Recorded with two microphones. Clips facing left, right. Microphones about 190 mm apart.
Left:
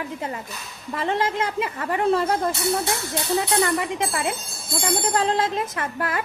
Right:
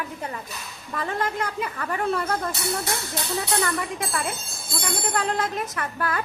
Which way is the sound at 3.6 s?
20° left (ahead or behind).